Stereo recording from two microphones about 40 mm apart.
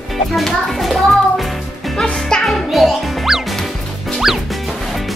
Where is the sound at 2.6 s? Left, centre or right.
Centre.